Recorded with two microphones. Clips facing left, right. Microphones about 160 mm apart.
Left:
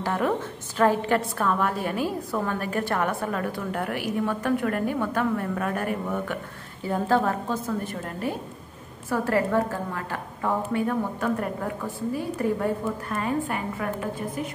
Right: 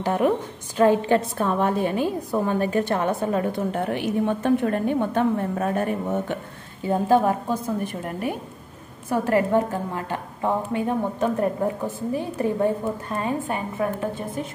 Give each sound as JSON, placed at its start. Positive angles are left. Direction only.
{"t": 0.0, "sound": "a woman's voice", "side_deg": -20}